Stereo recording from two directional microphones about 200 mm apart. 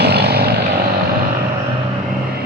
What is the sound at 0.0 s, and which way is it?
Vehicle, 55° right (ahead or behind).